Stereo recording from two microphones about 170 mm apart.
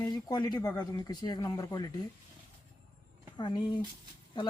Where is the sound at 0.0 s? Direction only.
20° left (ahead or behind).